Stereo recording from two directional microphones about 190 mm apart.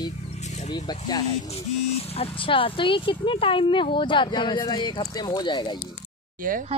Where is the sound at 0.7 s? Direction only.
20° left (ahead or behind).